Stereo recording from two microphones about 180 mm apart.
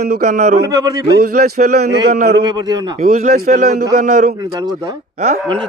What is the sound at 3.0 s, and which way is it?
A man's voice, 45° right (ahead or behind).